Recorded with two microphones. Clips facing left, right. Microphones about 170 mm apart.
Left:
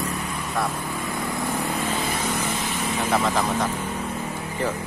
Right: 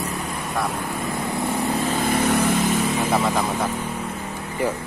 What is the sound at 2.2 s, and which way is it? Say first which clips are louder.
Vehicle: right 7 dB; 65° right (ahead or behind).